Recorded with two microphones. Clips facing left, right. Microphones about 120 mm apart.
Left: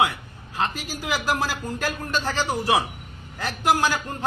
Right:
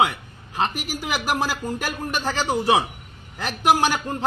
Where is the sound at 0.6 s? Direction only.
15° right (ahead or behind).